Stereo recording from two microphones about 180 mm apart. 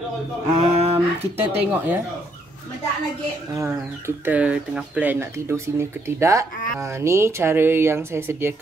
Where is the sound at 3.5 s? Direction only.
15° right (ahead or behind).